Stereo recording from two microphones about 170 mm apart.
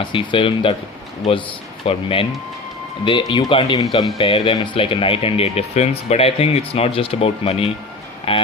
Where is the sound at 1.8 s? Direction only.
30° left (ahead or behind).